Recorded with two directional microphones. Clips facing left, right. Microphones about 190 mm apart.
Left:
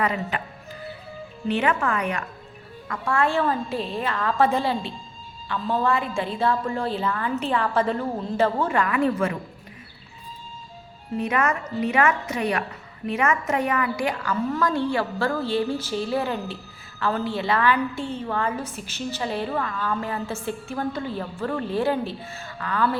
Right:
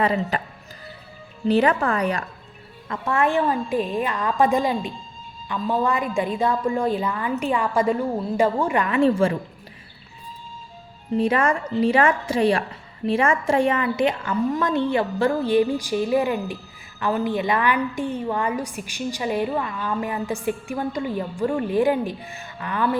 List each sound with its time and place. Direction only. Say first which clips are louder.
0.0 s a woman's voice: right 4 dB; 35° right (ahead or behind)
1.5 s a woman's voice: right 4 dB; 35° right (ahead or behind)
2.9 s a woman's voice: right 2 dB; 20° right (ahead or behind)
11.2 s a woman's voice: right 3 dB; 30° right (ahead or behind)